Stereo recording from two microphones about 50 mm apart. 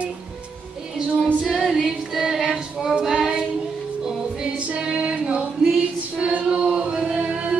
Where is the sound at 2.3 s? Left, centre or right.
Centre.